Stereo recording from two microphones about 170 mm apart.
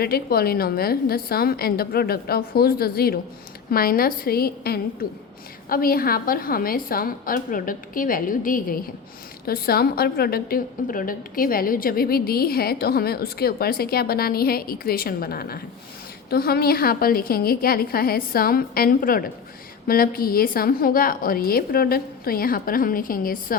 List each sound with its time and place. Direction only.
0.0 s a woman's voice: 65° left (ahead or behind)